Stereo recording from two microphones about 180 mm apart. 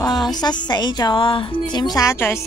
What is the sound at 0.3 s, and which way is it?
A woman's voice, 20° left (ahead or behind).